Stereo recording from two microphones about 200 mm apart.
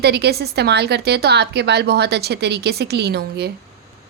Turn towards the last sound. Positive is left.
turn(degrees=-55)  # may be behind; listen again after turning